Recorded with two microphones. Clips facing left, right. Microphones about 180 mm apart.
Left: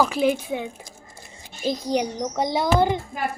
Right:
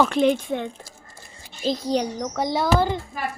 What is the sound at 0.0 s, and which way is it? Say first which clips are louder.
Speech: right 2 dB; 5° left (ahead or behind).